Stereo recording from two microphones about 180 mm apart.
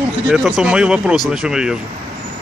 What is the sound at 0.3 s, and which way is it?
A man's voice, 5° right (ahead or behind).